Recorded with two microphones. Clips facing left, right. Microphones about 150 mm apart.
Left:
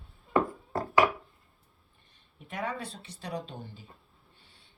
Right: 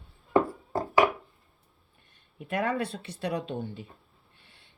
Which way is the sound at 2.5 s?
65° right (ahead or behind).